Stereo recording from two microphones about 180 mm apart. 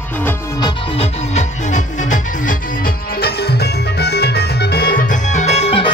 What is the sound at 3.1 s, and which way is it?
Music, 60° left (ahead or behind).